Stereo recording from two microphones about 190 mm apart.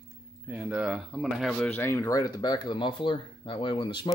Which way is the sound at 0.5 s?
5° right (ahead or behind).